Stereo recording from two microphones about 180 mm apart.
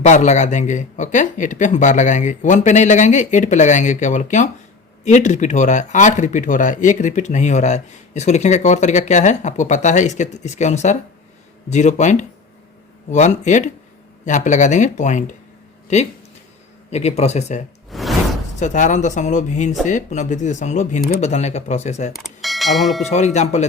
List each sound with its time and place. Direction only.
0.0 s speech: 40° left (ahead or behind)
16.9 s speech: 35° left (ahead or behind)
17.9 s a sound: centre (ahead or behind)
18.6 s speech: 45° left (ahead or behind)
22.1 s speech: centre (ahead or behind)
23.0 s speech: 40° left (ahead or behind)